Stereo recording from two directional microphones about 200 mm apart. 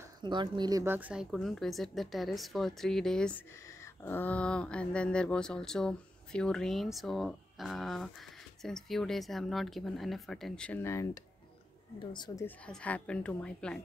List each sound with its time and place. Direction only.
0.2 s a woman's voice: 25° right (ahead or behind); by 11.1 s 15° left (ahead or behind)
12.1 s speech: 20° left (ahead or behind)
12.4 s a woman's voice: 5° left (ahead or behind)